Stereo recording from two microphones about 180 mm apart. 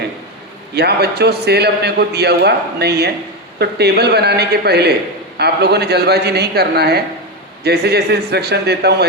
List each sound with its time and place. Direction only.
0.8 s a man's voice: 65° right (ahead or behind)